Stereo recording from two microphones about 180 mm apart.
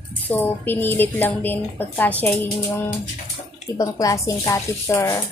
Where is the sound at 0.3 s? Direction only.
10° left (ahead or behind).